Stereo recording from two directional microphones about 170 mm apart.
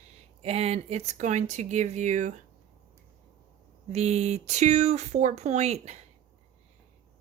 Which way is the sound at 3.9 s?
40° right (ahead or behind).